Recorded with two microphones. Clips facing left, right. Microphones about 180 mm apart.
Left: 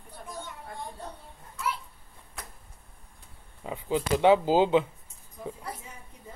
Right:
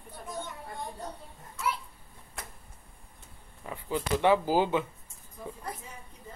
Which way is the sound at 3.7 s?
20° left (ahead or behind).